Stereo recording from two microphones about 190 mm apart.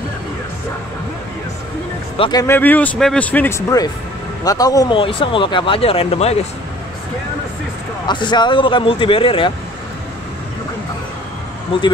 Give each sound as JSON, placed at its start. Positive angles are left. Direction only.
{"t": 2.1, "sound": "speech", "side_deg": 25}
{"t": 2.4, "sound": "speech", "side_deg": 10}
{"t": 8.1, "sound": "speech", "side_deg": 25}